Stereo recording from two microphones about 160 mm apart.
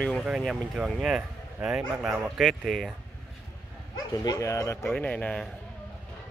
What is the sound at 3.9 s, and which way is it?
Speech, 25° left (ahead or behind).